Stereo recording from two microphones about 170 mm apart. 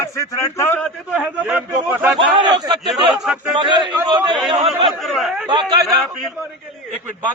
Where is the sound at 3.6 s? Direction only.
25° right (ahead or behind).